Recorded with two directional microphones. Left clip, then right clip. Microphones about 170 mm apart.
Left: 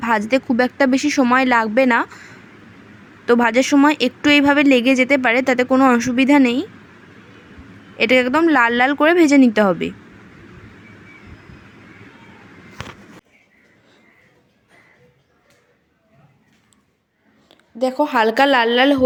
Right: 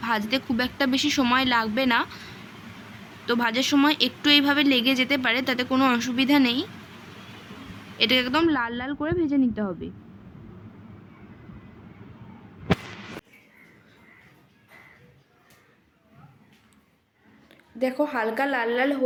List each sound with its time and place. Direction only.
0.0 s speech: 45° left (ahead or behind)
3.2 s speech: 45° left (ahead or behind)
5.7 s speech: 30° left (ahead or behind)
7.9 s speech: 45° left (ahead or behind)
17.5 s a sound: 25° left (ahead or behind)
18.0 s speech: 50° left (ahead or behind)